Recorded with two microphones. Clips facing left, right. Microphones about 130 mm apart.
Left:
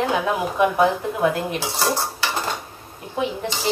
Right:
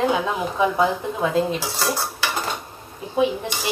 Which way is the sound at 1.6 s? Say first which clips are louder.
Left 2 dB; 20° left (ahead or behind).